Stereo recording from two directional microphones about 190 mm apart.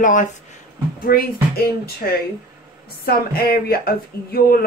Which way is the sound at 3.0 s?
50° left (ahead or behind).